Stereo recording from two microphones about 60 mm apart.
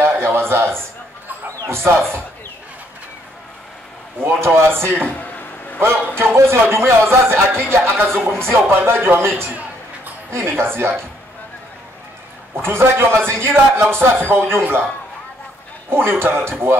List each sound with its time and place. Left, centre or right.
0.2 s a sound: right
1.7 s speech: right
4.2 s speech: right
5.0 s a man's voice: left
6.1 s speech: right
8.1 s speech: centre
8.4 s speech: right
12.6 s speech: right
15.9 s a man's voice: right